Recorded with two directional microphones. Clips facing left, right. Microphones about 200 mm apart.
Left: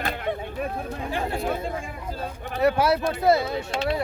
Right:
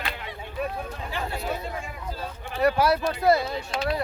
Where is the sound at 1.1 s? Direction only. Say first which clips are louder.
Left 4 dB; 50° left (ahead or behind).